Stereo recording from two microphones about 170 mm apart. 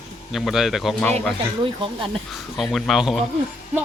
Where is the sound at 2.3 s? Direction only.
Centre (ahead or behind).